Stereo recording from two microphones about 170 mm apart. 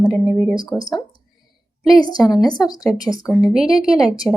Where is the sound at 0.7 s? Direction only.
25° left (ahead or behind).